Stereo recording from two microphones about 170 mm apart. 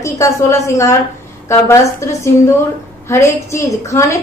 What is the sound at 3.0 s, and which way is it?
A woman's voice, 15° left (ahead or behind).